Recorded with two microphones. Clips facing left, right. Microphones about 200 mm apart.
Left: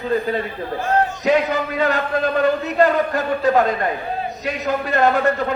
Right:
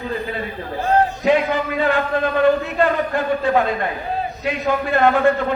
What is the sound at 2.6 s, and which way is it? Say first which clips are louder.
Speech: left 3 dB; 40° left (ahead or behind).